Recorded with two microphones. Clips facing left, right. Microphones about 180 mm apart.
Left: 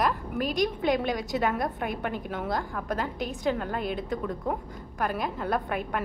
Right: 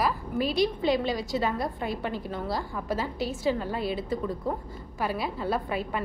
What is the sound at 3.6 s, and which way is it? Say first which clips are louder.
Speech: right 1 dB; 50° left (ahead or behind).